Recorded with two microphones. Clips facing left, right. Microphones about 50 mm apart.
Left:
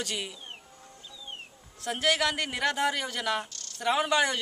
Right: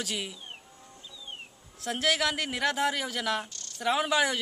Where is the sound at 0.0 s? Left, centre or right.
Centre.